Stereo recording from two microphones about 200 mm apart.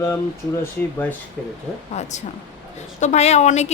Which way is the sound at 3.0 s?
35° left (ahead or behind).